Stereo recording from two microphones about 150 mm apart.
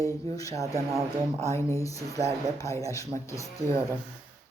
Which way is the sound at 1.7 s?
20° left (ahead or behind).